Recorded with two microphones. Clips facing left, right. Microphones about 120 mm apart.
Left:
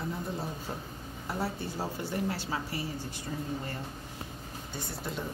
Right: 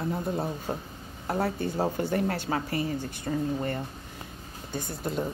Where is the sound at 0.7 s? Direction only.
55° right (ahead or behind).